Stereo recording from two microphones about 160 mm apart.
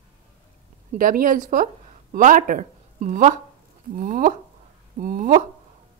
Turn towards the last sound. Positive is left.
turn(degrees=-55)  # may be behind; listen again after turning